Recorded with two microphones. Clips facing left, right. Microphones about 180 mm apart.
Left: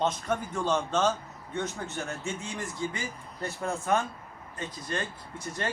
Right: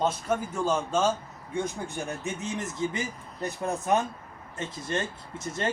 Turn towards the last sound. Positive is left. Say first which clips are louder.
# right 2 dB
turn(degrees=-25)  # may be behind; listen again after turning